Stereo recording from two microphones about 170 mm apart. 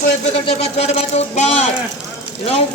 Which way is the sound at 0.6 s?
40° left (ahead or behind).